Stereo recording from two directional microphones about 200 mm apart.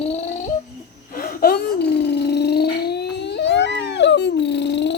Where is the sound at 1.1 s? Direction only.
45° left (ahead or behind).